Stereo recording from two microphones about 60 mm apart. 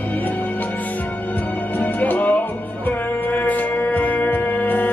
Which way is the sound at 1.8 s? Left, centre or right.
Left.